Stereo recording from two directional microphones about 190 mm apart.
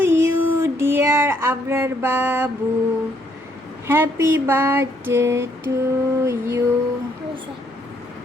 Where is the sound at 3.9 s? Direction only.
10° right (ahead or behind).